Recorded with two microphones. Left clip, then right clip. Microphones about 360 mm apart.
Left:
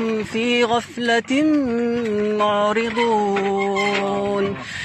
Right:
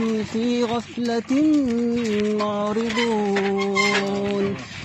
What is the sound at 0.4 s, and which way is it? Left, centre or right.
Speech, left.